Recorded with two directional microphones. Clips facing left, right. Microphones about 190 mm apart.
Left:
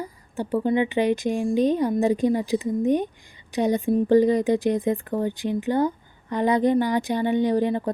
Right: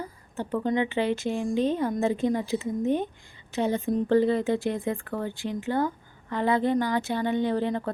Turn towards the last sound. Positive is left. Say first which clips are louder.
# left 4 dB
turn(degrees=15)  # may be behind; listen again after turning